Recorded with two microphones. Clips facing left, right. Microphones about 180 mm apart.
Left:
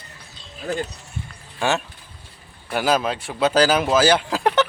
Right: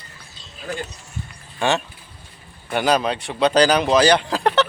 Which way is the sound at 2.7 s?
5° left (ahead or behind).